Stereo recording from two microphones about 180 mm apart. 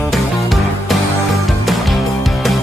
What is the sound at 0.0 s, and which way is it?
Music, centre (ahead or behind).